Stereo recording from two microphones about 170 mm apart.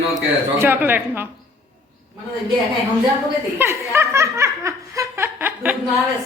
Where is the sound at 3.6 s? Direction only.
15° right (ahead or behind).